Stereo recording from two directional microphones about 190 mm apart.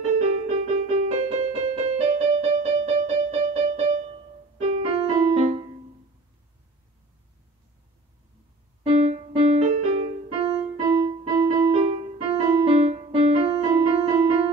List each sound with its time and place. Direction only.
0.2 s music: 35° right (ahead or behind)
8.8 s music: 35° right (ahead or behind)